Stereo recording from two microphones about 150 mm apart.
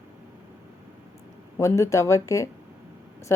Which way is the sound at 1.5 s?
20° left (ahead or behind).